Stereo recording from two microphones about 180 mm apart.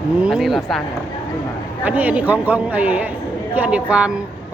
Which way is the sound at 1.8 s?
10° right (ahead or behind).